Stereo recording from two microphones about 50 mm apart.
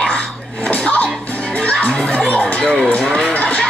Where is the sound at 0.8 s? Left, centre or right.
Left.